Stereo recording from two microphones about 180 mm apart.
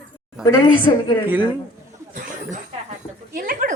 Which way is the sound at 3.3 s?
50° right (ahead or behind).